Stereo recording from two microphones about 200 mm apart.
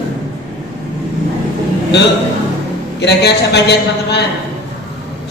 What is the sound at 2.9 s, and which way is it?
A man's voice, 60° left (ahead or behind).